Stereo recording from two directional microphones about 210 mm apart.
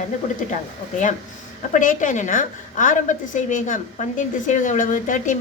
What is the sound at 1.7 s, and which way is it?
A woman's voice, 35° left (ahead or behind).